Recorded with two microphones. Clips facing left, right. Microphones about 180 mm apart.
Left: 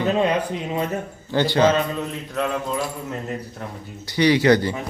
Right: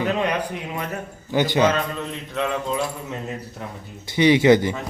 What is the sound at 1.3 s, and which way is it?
Speech, 15° right (ahead or behind).